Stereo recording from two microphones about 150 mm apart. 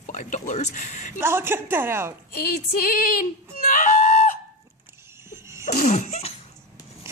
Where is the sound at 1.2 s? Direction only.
15° right (ahead or behind).